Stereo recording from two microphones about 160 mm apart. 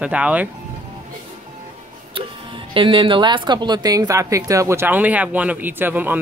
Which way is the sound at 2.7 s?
30° right (ahead or behind).